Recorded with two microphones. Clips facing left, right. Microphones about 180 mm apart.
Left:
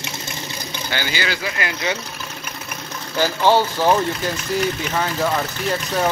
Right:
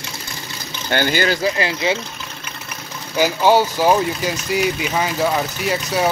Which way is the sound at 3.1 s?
10° right (ahead or behind).